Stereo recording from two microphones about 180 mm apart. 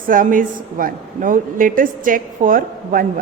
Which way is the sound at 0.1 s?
50° right (ahead or behind).